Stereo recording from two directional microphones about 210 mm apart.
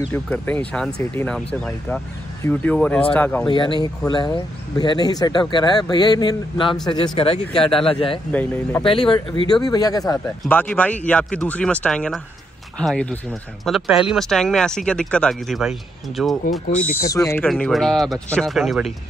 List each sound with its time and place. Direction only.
0.1 s speech: 5° left (ahead or behind)
3.4 s speech: 25° left (ahead or behind)
8.3 s speech: 10° left (ahead or behind)
9.5 s speech: 20° left (ahead or behind)
10.4 s speech: 5° left (ahead or behind)
16.9 s speech: 15° left (ahead or behind)
17.5 s speech: centre (ahead or behind)